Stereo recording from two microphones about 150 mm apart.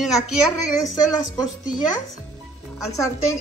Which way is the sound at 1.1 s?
25° left (ahead or behind).